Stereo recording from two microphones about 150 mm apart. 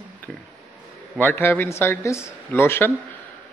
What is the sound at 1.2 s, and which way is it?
Speech, 15° left (ahead or behind).